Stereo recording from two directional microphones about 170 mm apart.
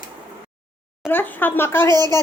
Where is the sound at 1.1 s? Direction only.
10° left (ahead or behind).